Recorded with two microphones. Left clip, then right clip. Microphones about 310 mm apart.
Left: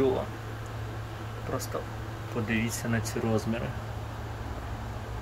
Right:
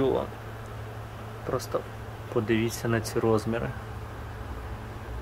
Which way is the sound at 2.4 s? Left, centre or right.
Centre.